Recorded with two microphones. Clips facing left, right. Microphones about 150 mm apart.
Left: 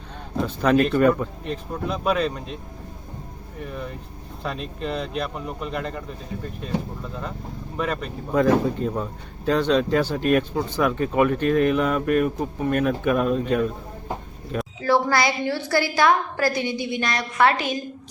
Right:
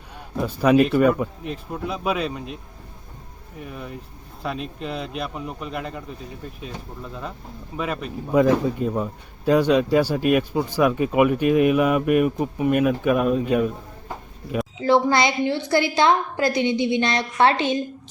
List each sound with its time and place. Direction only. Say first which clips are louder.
0.3 s speech: right 2 dB; 10° right (ahead or behind)
3.6 s speech: left 2 dB; 5° right (ahead or behind)
7.8 s speech: even; 5° right (ahead or behind)
14.8 s a woman's voice: right 2 dB; 20° right (ahead or behind)